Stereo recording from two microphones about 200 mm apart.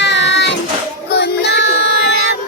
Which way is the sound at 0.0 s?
60° left (ahead or behind).